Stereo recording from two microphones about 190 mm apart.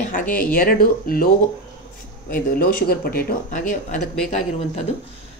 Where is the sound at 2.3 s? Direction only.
50° left (ahead or behind).